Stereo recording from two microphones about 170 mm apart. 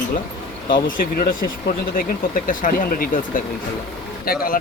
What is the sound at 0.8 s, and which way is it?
Speech, 60° left (ahead or behind).